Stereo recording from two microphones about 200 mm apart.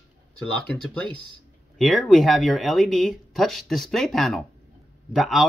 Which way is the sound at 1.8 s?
Centre (ahead or behind).